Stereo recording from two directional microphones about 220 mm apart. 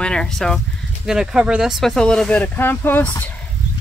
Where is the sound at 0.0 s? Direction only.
5° left (ahead or behind).